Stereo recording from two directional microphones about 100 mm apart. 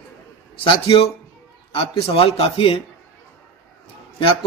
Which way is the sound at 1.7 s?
65° left (ahead or behind).